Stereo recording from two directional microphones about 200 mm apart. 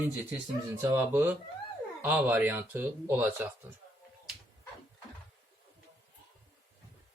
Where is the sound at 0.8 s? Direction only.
10° right (ahead or behind).